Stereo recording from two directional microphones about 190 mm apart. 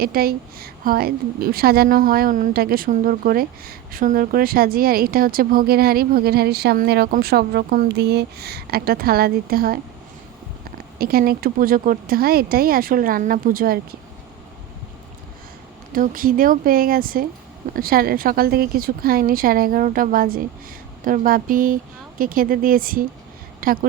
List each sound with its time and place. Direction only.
0.0 s a woman's voice: 50° right (ahead or behind)
10.9 s a woman's voice: 50° right (ahead or behind)
15.9 s a woman's voice: 45° right (ahead or behind)